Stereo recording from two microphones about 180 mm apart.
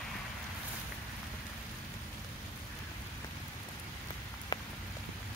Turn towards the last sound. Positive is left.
turn(degrees=25)  # may be behind; listen again after turning